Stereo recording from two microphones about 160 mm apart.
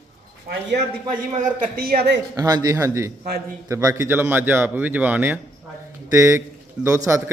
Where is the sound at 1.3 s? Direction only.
60° right (ahead or behind); by 2.2 s 80° right.